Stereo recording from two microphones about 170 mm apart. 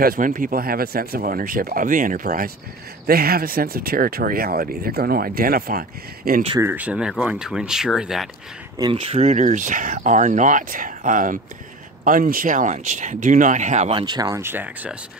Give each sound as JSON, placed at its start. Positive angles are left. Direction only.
{"t": 0.0, "sound": "speech", "side_deg": -55}
{"t": 6.6, "sound": "speech", "side_deg": -10}
{"t": 8.7, "sound": "speech", "side_deg": -30}
{"t": 13.9, "sound": "speech", "side_deg": -25}